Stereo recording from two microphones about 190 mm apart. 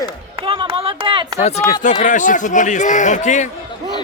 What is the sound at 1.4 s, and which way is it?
Speech, 35° left (ahead or behind).